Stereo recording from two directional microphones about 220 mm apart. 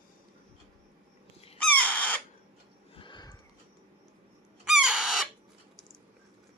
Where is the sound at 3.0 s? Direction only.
20° left (ahead or behind).